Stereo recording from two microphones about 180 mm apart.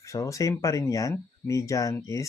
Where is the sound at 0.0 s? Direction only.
15° left (ahead or behind).